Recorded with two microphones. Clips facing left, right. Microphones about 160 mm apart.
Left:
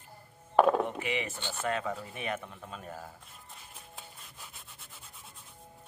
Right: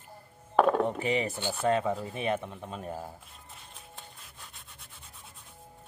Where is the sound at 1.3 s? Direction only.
10° right (ahead or behind).